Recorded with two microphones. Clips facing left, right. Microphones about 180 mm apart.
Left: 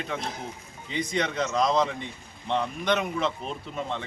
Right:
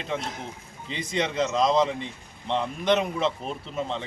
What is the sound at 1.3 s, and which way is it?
Speech, centre (ahead or behind).